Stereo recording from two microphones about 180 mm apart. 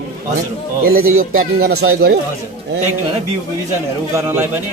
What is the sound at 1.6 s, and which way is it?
Speech, 65° right (ahead or behind).